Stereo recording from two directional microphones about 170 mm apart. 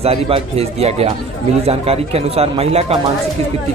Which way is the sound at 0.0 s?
35° right (ahead or behind).